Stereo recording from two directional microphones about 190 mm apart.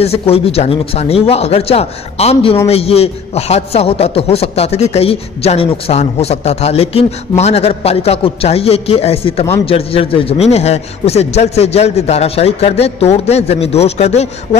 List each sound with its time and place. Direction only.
0.0 s speech: 30° left (ahead or behind)